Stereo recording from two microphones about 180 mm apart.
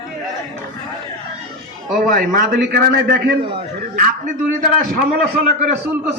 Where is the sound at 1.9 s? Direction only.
50° right (ahead or behind).